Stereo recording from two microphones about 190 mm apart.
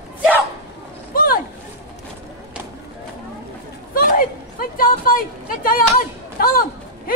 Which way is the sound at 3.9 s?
50° left (ahead or behind).